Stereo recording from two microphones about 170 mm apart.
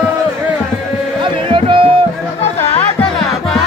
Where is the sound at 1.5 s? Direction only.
30° right (ahead or behind).